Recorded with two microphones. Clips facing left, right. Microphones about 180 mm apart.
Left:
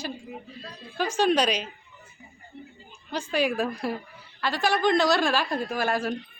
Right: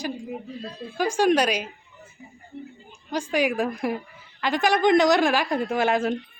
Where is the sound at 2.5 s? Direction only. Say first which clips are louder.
Right 6 dB; 55° right (ahead or behind).